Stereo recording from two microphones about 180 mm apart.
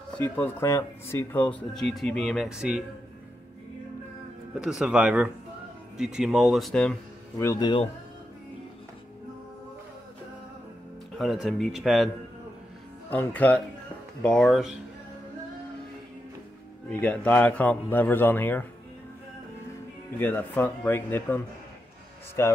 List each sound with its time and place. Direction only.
0.2 s speech: 15° left (ahead or behind); by 2.8 s 5° right (ahead or behind)
4.6 s speech: 5° right (ahead or behind)
7.3 s speech: 20° left (ahead or behind)
11.1 s speech: centre (ahead or behind)
13.1 s a man's voice: 10° left (ahead or behind)
16.9 s a man's voice: 10° left (ahead or behind)
20.2 s a man's voice: 10° left (ahead or behind)
22.4 s a man's voice: 15° left (ahead or behind)